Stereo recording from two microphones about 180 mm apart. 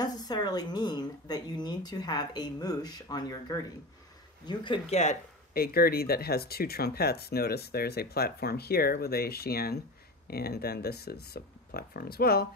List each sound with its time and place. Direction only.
0.0 s speech: 20° left (ahead or behind)
5.5 s speech: 55° left (ahead or behind)